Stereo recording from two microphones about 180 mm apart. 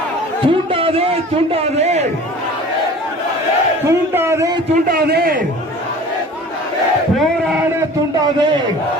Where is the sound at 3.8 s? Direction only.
15° right (ahead or behind).